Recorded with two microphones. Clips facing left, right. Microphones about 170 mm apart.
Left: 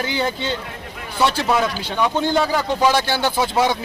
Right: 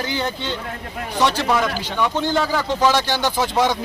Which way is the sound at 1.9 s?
15° left (ahead or behind).